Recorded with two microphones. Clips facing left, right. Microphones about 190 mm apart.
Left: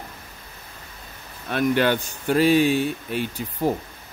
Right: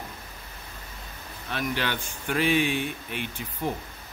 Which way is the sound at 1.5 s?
50° left (ahead or behind).